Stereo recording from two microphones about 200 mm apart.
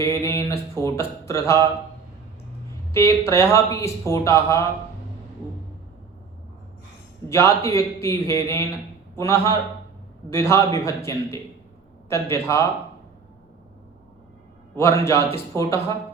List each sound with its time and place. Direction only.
0.0 s a sound: 15° left (ahead or behind)
0.7 s speech: 15° left (ahead or behind)
2.9 s speech: 15° left (ahead or behind)
7.3 s speech: 15° left (ahead or behind)
14.8 s speech: 15° left (ahead or behind)